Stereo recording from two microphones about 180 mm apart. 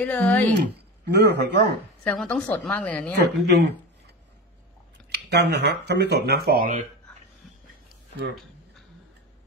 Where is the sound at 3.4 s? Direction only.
70° right (ahead or behind).